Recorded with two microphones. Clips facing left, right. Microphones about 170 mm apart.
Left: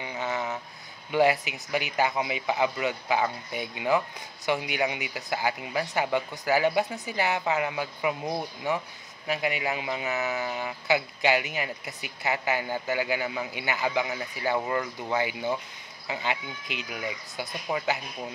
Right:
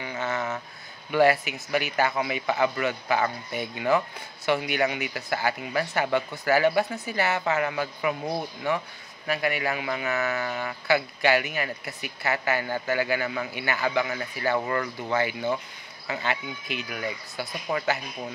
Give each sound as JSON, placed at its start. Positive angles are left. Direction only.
{"t": 0.0, "sound": "a sound", "side_deg": 15}
{"t": 1.1, "sound": "speech", "side_deg": 15}
{"t": 13.1, "sound": "speech", "side_deg": 15}